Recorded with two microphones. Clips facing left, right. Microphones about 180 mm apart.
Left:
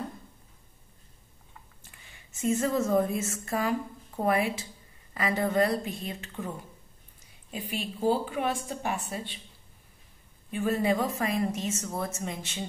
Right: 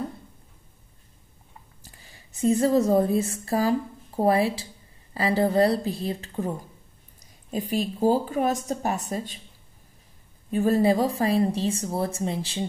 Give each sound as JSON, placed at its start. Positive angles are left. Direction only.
{"t": 1.8, "sound": "a woman's voice", "side_deg": -35}
{"t": 7.5, "sound": "a woman's voice", "side_deg": -40}
{"t": 10.5, "sound": "a woman's voice", "side_deg": -35}